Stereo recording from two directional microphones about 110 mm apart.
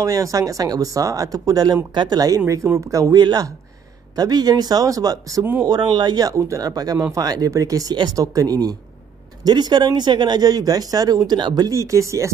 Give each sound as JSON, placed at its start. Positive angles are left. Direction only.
{"t": 0.0, "sound": "speech", "side_deg": -30}